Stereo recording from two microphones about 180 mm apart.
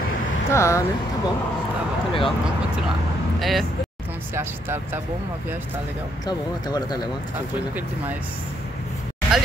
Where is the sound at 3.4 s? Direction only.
Centre (ahead or behind).